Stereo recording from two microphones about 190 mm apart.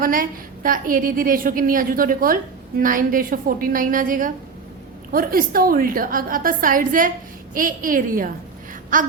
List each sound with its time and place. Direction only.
0.0 s a woman's voice: 45° right (ahead or behind)